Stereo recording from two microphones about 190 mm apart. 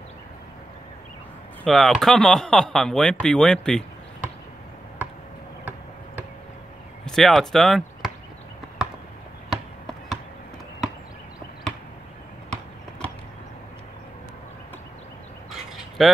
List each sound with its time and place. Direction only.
1.6 s speech: centre (ahead or behind)
7.1 s speech: centre (ahead or behind)
9.5 s a sound: centre (ahead or behind)
16.0 s speech: centre (ahead or behind)